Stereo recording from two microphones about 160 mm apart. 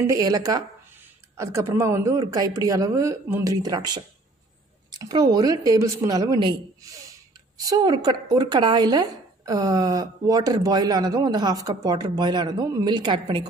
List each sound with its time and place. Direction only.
0.0 s speech: 20° right (ahead or behind)